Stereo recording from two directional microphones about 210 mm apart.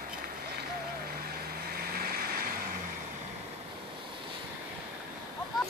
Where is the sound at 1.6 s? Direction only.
45° right (ahead or behind).